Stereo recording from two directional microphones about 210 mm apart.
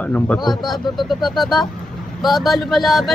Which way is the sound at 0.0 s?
5° left (ahead or behind).